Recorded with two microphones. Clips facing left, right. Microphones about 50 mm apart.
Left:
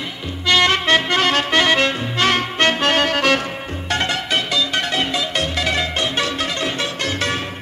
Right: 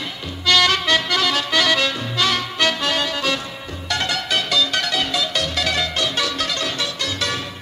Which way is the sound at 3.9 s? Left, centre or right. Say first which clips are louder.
Left 2 dB; left.